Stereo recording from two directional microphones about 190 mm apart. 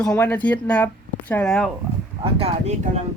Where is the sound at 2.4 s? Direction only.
35° right (ahead or behind).